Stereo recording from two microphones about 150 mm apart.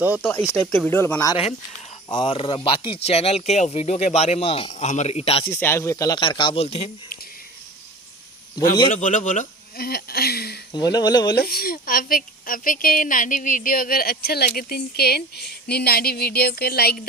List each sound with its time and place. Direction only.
0.2 s speech: 10° left (ahead or behind)
0.9 s speech: 15° left (ahead or behind)
2.0 s speech: 30° left (ahead or behind)
4.7 s speech: 50° left (ahead or behind)
5.5 s speech: 15° left (ahead or behind); by 6.9 s 40° left (ahead or behind)
8.9 s speech: 55° left (ahead or behind); by 10.6 s 90° left
10.7 s speech: 30° left (ahead or behind)
11.3 s a woman's voice: 85° left